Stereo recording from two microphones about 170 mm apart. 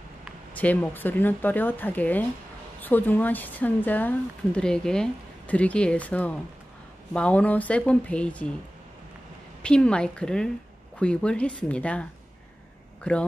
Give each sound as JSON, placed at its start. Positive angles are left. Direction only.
{"t": 0.6, "sound": "a woman's voice", "side_deg": 10}
{"t": 9.6, "sound": "a woman's voice", "side_deg": 5}